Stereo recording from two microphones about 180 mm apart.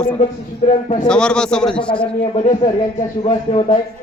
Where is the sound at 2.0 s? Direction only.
35° left (ahead or behind).